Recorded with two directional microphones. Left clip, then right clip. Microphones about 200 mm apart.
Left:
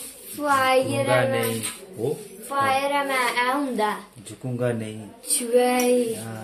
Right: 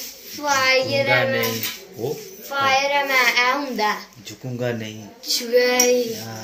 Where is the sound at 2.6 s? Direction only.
20° left (ahead or behind).